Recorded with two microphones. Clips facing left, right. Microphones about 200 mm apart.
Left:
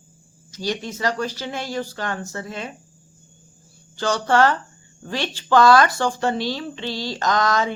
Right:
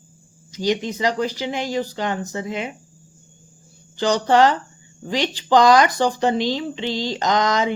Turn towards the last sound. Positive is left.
turn(degrees=-20)  # may be behind; listen again after turning